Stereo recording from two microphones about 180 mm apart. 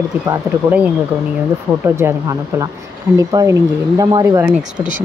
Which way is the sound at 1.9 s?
15° right (ahead or behind).